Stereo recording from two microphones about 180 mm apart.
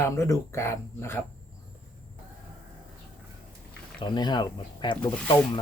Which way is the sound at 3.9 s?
25° left (ahead or behind).